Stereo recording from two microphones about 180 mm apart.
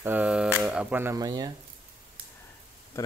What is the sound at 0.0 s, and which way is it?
Speech, 10° right (ahead or behind).